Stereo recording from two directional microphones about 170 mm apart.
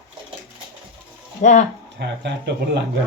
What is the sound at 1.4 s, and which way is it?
Speech, 45° left (ahead or behind).